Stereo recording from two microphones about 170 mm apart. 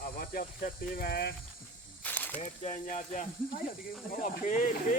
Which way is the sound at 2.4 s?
45° left (ahead or behind).